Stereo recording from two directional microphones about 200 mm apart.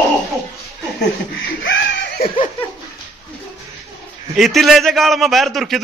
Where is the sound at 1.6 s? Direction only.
65° left (ahead or behind).